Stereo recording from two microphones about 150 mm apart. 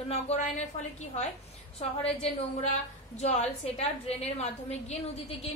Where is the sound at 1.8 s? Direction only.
45° left (ahead or behind).